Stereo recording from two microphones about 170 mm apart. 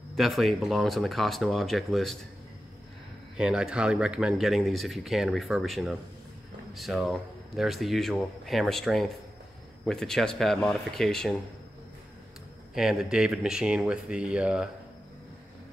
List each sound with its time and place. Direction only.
0.1 s speech: centre (ahead or behind)
3.3 s speech: 5° right (ahead or behind)
12.7 s speech: 5° right (ahead or behind)